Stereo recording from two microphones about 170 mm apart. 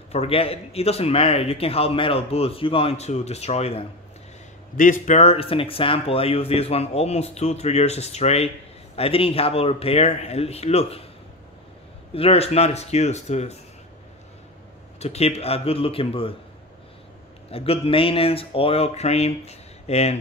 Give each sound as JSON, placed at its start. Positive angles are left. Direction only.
{"t": 0.1, "sound": "speech", "side_deg": 35}
{"t": 4.7, "sound": "speech", "side_deg": 50}
{"t": 12.1, "sound": "speech", "side_deg": 35}
{"t": 15.0, "sound": "speech", "side_deg": 40}
{"t": 17.5, "sound": "speech", "side_deg": 35}